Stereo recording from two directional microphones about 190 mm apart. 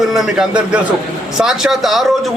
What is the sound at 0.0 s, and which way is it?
A man's voice, centre (ahead or behind).